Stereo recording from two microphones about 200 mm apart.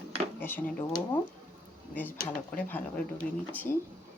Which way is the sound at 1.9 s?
10° left (ahead or behind).